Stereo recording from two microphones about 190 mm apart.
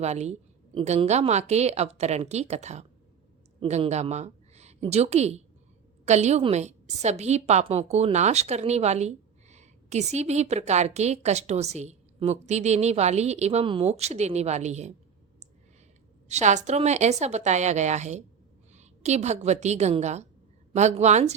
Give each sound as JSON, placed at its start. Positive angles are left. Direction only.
{"t": 0.0, "sound": "a woman's voice", "side_deg": -35}
{"t": 16.3, "sound": "a woman's voice", "side_deg": -40}